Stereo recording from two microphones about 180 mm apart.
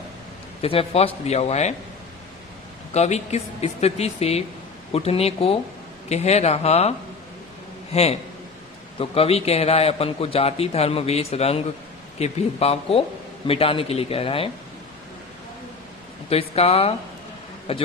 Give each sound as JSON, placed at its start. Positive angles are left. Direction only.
{"t": 0.6, "sound": "a man's voice", "side_deg": 30}
{"t": 2.9, "sound": "a man's voice", "side_deg": 35}
{"t": 7.9, "sound": "a man's voice", "side_deg": 35}
{"t": 16.3, "sound": "a man's voice", "side_deg": 35}